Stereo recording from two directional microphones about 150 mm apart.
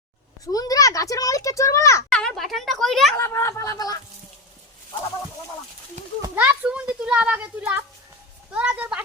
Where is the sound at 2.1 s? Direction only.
5° left (ahead or behind).